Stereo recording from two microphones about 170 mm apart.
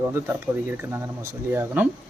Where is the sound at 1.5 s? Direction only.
10° right (ahead or behind).